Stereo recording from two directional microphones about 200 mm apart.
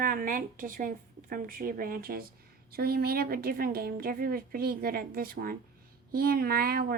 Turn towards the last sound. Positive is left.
turn(degrees=-50)  # may be behind; listen again after turning